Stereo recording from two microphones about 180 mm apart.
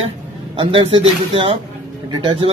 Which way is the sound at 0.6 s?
30° right (ahead or behind).